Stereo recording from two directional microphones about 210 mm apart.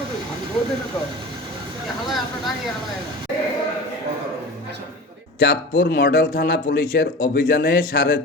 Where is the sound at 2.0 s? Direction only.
Centre (ahead or behind).